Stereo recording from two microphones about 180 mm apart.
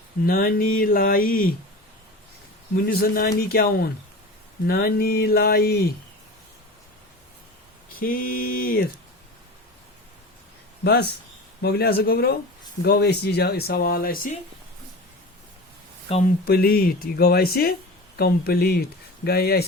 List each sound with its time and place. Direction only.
0.3 s speech: 55° left (ahead or behind)
2.8 s speech: 55° left (ahead or behind)
7.9 s speech: 55° left (ahead or behind)
10.8 s speech: 65° left (ahead or behind)
16.0 s speech: 35° left (ahead or behind)
16.5 s speech: 55° left (ahead or behind)